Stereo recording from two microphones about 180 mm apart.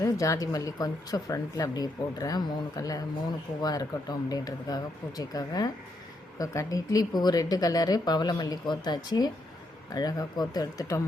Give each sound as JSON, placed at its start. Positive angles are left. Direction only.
{"t": 0.0, "sound": "speech", "side_deg": 20}